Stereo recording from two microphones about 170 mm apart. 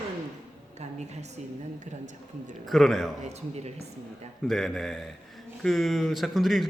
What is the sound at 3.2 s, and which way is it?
Speech, 40° right (ahead or behind).